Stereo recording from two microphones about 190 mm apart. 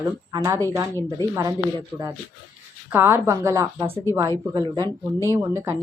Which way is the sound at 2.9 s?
10° right (ahead or behind).